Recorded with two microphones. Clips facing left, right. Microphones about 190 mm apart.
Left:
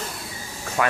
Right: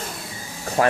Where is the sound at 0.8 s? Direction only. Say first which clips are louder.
Right 4 dB; 35° right (ahead or behind).